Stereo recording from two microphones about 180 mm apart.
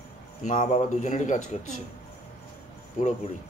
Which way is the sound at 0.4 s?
40° left (ahead or behind).